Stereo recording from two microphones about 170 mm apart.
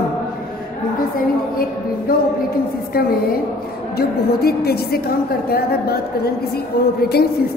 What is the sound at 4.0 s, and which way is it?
A woman's voice, 65° left (ahead or behind).